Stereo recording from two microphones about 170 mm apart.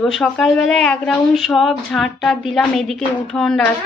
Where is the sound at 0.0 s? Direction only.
5° left (ahead or behind).